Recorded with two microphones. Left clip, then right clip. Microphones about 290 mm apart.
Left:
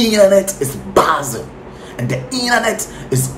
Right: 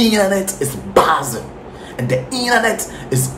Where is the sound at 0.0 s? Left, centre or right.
Centre.